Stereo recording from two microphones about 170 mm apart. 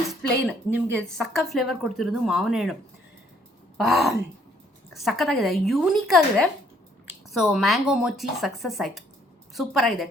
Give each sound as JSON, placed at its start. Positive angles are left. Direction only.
{"t": 0.1, "sound": "speech", "side_deg": 0}
{"t": 3.8, "sound": "speech", "side_deg": 0}